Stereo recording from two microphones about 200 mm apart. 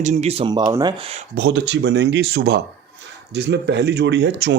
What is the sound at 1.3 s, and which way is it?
Speech, 60° right (ahead or behind).